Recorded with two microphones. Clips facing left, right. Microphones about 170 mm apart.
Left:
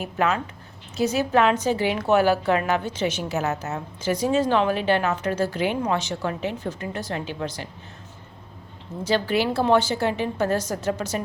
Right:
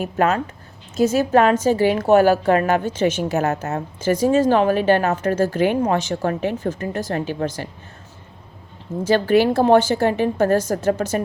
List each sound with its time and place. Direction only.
0.0 s a woman's voice: 45° right (ahead or behind)
9.0 s a woman's voice: 50° right (ahead or behind)